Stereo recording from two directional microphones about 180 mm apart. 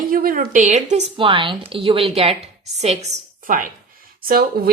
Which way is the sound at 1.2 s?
25° right (ahead or behind).